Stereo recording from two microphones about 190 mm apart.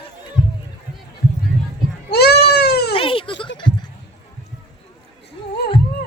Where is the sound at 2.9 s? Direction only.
25° left (ahead or behind).